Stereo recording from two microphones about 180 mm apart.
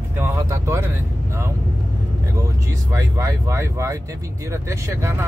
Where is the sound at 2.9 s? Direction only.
15° right (ahead or behind).